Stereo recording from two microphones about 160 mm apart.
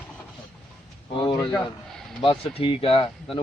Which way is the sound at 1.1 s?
25° left (ahead or behind).